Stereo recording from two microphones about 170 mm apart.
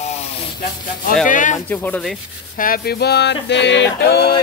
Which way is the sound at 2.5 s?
55° left (ahead or behind).